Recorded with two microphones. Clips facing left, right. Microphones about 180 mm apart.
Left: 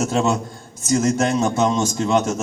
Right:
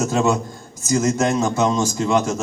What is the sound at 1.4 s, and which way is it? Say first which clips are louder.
Speech: even; 25° left (ahead or behind).